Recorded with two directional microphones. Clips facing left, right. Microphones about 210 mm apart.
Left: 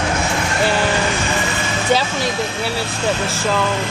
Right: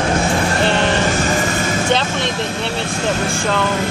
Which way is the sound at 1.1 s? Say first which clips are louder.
Right 3 dB; 45° right (ahead or behind).